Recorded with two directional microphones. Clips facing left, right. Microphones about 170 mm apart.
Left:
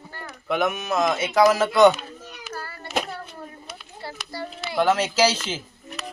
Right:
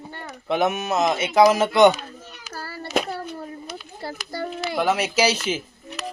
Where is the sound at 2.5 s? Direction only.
35° right (ahead or behind).